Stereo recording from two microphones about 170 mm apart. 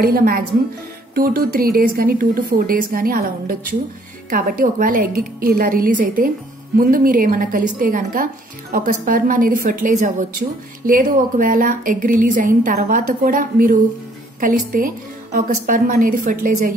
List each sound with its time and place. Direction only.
0.0 s a woman's voice: 60° right (ahead or behind)